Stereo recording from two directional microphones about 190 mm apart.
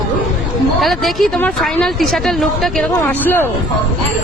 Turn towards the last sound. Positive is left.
turn(degrees=10)  # may be behind; listen again after turning